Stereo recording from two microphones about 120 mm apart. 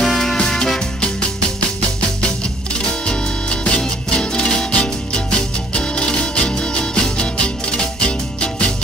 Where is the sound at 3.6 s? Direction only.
10° left (ahead or behind).